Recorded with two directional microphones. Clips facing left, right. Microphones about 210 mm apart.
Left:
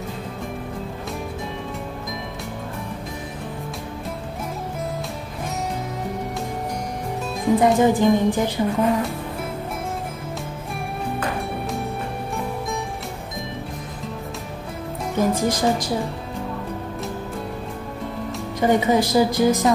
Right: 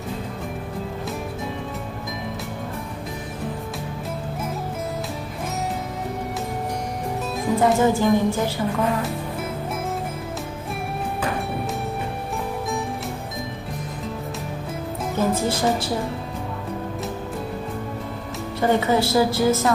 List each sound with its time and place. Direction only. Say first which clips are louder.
7.5 s a woman's voice: left 2 dB; 15° left (ahead or behind)
15.1 s a woman's voice: left 2 dB; 15° left (ahead or behind)
18.6 s a woman's voice: left 1 dB; 15° left (ahead or behind)